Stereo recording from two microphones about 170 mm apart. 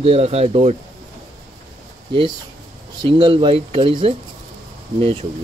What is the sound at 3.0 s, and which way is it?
Speech, 30° right (ahead or behind).